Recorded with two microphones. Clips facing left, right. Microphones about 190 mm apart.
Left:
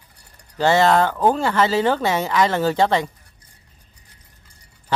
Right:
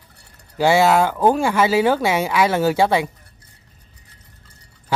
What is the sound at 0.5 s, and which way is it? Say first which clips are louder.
Speech: right 1 dB; 10° right (ahead or behind).